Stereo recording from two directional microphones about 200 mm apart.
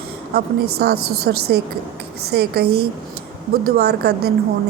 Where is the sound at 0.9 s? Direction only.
90° right.